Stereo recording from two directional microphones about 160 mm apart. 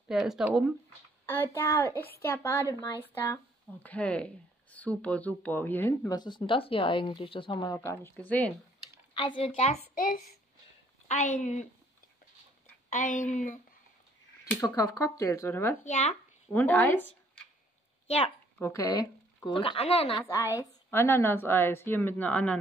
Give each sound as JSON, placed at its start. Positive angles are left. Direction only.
{"t": 0.1, "sound": "speech", "side_deg": 0}
{"t": 1.2, "sound": "speech", "side_deg": 15}
{"t": 3.8, "sound": "speech", "side_deg": 10}
{"t": 9.4, "sound": "speech", "side_deg": 40}
{"t": 11.1, "sound": "speech", "side_deg": 50}
{"t": 12.9, "sound": "speech", "side_deg": 55}
{"t": 14.6, "sound": "speech", "side_deg": 20}
{"t": 15.8, "sound": "speech", "side_deg": 45}
{"t": 16.5, "sound": "speech", "side_deg": 10}
{"t": 18.0, "sound": "speech", "side_deg": 40}
{"t": 18.6, "sound": "speech", "side_deg": 20}
{"t": 20.2, "sound": "speech", "side_deg": 20}